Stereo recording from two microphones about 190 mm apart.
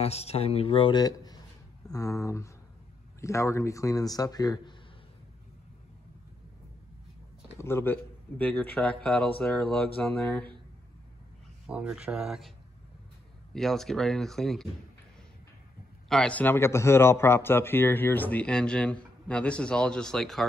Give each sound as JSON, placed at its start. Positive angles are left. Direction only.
{"t": 0.0, "sound": "a man's voice", "side_deg": 35}
{"t": 7.5, "sound": "a man's voice", "side_deg": 10}
{"t": 11.7, "sound": "speech", "side_deg": -5}
{"t": 16.1, "sound": "a man's voice", "side_deg": 5}